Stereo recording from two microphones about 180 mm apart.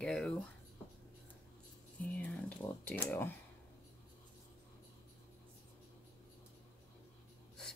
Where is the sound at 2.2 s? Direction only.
10° left (ahead or behind).